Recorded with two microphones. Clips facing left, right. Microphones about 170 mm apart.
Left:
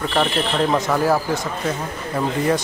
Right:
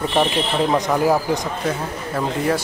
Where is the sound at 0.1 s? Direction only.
15° right (ahead or behind).